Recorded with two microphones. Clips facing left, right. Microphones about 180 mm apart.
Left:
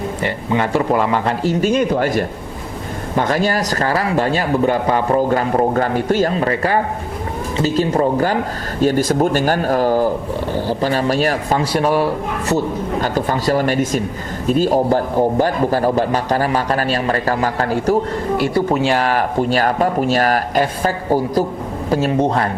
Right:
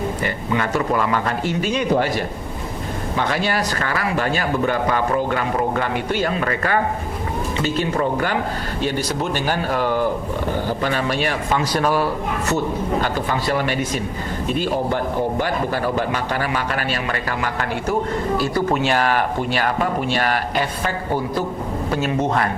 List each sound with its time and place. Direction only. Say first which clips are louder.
0.2 s speech: left 3 dB; 25° left (ahead or behind)
1.5 s speech: left 5 dB; 45° left (ahead or behind); by 12.0 s 25° left (ahead or behind)
13.0 s speech: left 3 dB; 45° left (ahead or behind)